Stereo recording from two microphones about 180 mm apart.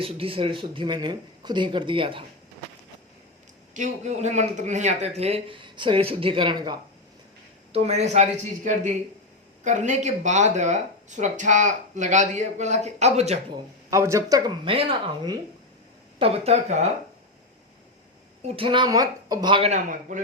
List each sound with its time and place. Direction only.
0.0 s speech: 30° right (ahead or behind)
3.8 s speech: 40° right (ahead or behind); by 6.7 s 25° right (ahead or behind)
7.7 s speech: 35° right (ahead or behind)
13.5 s speech: 15° right (ahead or behind); by 16.9 s 35° right (ahead or behind)
18.4 s speech: 30° right (ahead or behind)
19.7 s a man's voice: 45° right (ahead or behind)